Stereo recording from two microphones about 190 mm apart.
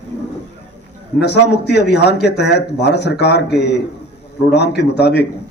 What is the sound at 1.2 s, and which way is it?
A man's voice, 60° left (ahead or behind).